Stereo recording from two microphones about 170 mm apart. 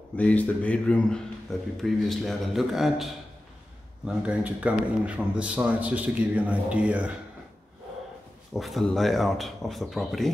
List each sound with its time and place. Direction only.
0.2 s speech: 10° left (ahead or behind)
4.3 s a man's voice: 5° right (ahead or behind)
8.5 s speech: centre (ahead or behind)